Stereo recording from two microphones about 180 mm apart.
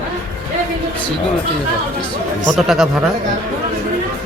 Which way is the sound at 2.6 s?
Centre (ahead or behind).